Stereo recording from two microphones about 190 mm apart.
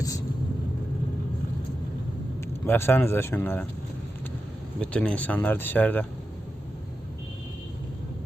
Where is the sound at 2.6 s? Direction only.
10° left (ahead or behind).